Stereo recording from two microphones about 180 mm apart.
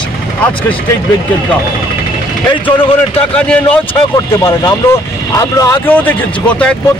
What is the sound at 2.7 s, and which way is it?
Speech, 30° left (ahead or behind).